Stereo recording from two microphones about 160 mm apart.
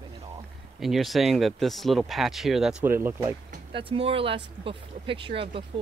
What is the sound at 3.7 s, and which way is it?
Speech, 35° right (ahead or behind).